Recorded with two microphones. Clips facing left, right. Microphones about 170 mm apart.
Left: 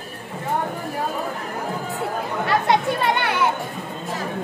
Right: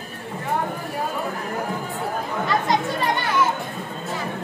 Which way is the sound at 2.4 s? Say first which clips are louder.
Left 3 dB; 65° left (ahead or behind).